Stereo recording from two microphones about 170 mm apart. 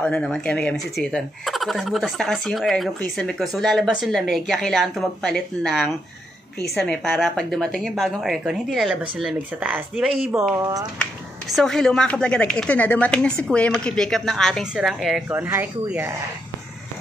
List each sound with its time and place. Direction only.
0.0 s speech: 5° left (ahead or behind)
10.5 s speech: 20° right (ahead or behind)
11.5 s speech: centre (ahead or behind)
15.2 s speech: 15° right (ahead or behind)